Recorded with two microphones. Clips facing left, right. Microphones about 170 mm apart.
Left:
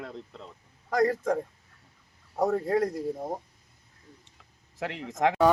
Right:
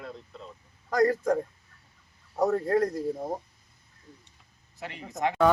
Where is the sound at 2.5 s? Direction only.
10° left (ahead or behind).